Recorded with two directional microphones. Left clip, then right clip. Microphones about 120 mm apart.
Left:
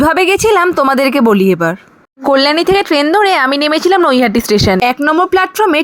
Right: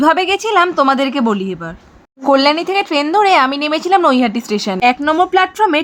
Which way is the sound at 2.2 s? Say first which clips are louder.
Left 2 dB; 30° left (ahead or behind).